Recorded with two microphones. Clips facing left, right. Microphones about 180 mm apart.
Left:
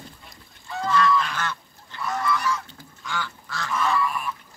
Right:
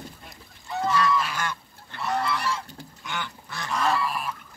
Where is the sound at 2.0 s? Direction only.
30° right (ahead or behind).